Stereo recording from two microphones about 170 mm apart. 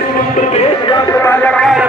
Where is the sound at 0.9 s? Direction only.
15° left (ahead or behind).